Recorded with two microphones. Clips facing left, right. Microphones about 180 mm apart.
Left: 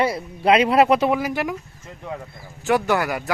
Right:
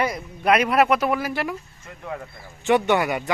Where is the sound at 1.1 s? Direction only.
15° left (ahead or behind).